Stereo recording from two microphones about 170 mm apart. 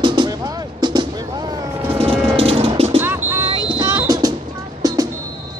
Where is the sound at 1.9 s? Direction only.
35° right (ahead or behind).